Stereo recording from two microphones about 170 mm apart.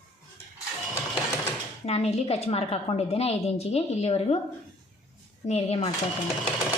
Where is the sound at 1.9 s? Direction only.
35° left (ahead or behind).